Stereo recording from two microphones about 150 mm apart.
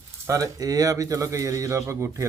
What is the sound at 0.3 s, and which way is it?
Speech, 20° right (ahead or behind).